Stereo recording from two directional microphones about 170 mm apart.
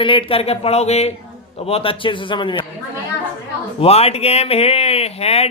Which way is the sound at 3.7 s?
35° left (ahead or behind).